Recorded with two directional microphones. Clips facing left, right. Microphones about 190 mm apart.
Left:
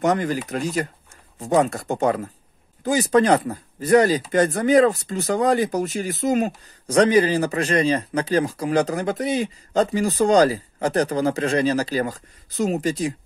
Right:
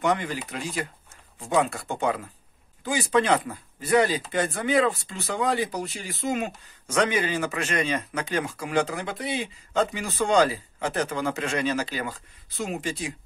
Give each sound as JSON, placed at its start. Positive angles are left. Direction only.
{"t": 0.0, "sound": "speech", "side_deg": 40}